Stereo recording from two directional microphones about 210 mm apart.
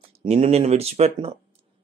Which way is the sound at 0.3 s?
30° right (ahead or behind).